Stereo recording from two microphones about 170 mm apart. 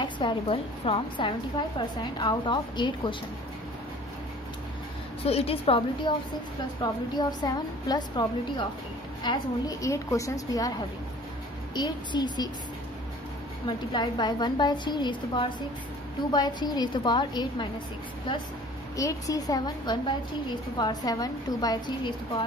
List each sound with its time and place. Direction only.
0.0 s a woman's voice: 30° left (ahead or behind)
5.2 s a woman's voice: 35° left (ahead or behind); by 10.7 s 20° left (ahead or behind)
11.7 s a woman's voice: 25° left (ahead or behind)
13.7 s a woman's voice: 25° left (ahead or behind)
18.9 s a woman's voice: 20° left (ahead or behind)